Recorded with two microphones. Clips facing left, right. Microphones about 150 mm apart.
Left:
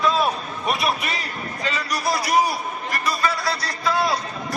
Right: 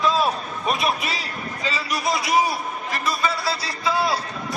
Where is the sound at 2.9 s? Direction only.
Centre (ahead or behind).